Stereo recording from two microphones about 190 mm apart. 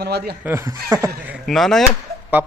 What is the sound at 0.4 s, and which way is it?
A man's voice, 15° right (ahead or behind).